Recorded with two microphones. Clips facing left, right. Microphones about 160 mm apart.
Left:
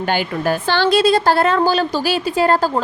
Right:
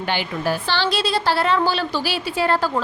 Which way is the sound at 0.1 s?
50° left (ahead or behind).